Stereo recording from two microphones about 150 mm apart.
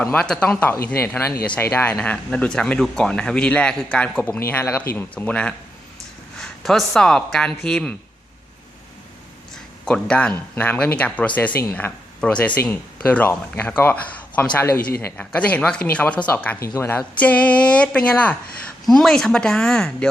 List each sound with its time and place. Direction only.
0.0 s speech: 10° left (ahead or behind)
9.8 s speech: 5° left (ahead or behind)